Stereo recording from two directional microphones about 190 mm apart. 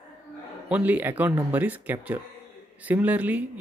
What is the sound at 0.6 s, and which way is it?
Speech, 10° right (ahead or behind).